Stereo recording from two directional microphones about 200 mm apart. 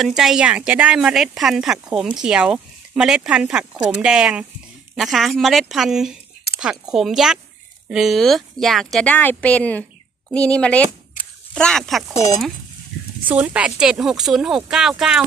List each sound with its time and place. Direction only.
0.0 s speech: centre (ahead or behind)
11.2 s a sound: 45° left (ahead or behind)
11.5 s speech: 5° left (ahead or behind)
13.3 s speech: 5° right (ahead or behind)